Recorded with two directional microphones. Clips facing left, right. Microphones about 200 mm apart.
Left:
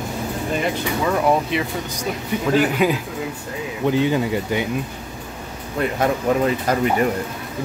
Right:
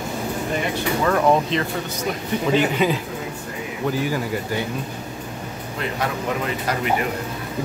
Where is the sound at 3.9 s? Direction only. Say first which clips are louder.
Left 5 dB; 20° left (ahead or behind).